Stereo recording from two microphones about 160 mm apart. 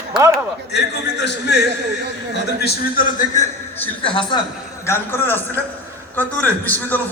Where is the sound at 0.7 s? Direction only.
90° left.